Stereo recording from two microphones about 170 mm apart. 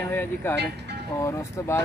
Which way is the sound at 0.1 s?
10° left (ahead or behind).